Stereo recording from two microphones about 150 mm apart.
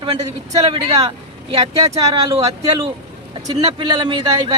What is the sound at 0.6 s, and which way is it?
Speech, 30° right (ahead or behind).